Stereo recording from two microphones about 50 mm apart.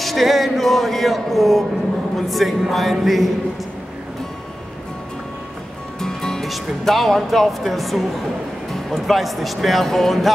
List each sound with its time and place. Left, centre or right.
0.0 s music: centre
2.1 s speech: centre
5.9 s music: centre
6.4 s speech: centre